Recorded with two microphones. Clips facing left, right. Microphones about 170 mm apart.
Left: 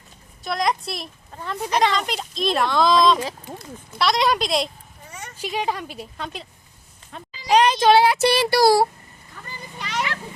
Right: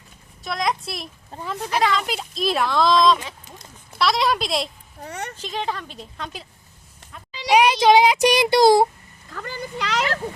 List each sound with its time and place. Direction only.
0.4 s speech: centre (ahead or behind)
1.3 s speech: 30° right (ahead or behind)
1.7 s speech: centre (ahead or behind)
4.9 s speech: 70° right (ahead or behind)
5.4 s a woman's voice: 10° left (ahead or behind)
7.5 s speech: 10° right (ahead or behind)
9.3 s a sound: 90° right